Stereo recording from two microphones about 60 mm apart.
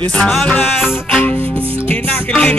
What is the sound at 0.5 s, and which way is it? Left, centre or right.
Music, left.